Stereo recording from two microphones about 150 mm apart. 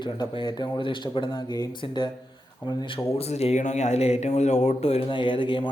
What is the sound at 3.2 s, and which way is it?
Speech, 45° left (ahead or behind).